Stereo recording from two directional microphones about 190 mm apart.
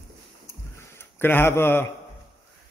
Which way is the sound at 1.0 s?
10° left (ahead or behind).